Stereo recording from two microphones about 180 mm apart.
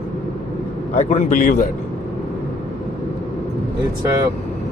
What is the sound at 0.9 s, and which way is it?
Speech, 40° left (ahead or behind).